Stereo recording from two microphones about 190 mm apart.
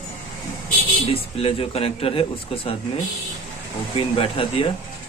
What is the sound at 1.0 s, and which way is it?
Speech, 30° left (ahead or behind).